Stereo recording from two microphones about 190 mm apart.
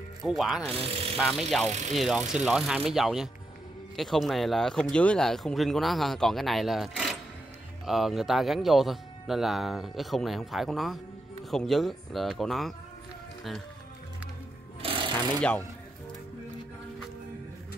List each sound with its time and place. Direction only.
0.3 s speech: centre (ahead or behind)
0.7 s speech: 30° right (ahead or behind)
1.1 s speech: centre (ahead or behind)
14.8 s a sound: 25° right (ahead or behind)